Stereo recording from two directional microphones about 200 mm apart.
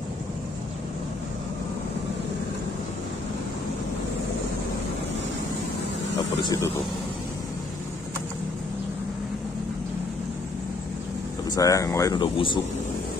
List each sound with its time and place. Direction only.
6.4 s speech: 20° left (ahead or behind)
11.5 s speech: 15° left (ahead or behind)